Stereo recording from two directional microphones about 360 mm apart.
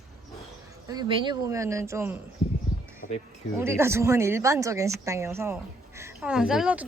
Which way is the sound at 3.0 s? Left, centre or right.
Left.